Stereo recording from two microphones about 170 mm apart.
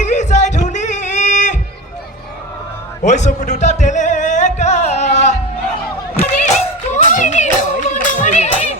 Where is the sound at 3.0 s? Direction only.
45° left (ahead or behind).